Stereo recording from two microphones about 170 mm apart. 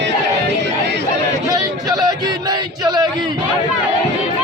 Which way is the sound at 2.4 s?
25° right (ahead or behind).